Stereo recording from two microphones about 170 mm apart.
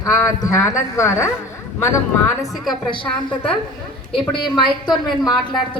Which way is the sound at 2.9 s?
30° left (ahead or behind).